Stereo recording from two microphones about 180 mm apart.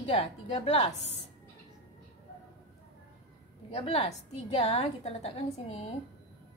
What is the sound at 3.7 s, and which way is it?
A woman's voice, 35° left (ahead or behind).